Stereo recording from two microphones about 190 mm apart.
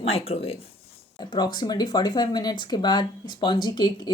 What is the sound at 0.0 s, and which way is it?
Speech, 30° left (ahead or behind).